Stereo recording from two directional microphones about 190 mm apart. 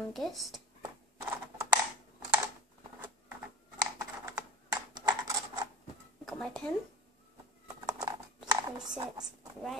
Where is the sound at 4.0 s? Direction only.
15° right (ahead or behind).